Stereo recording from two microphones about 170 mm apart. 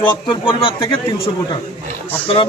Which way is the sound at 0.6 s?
30° left (ahead or behind).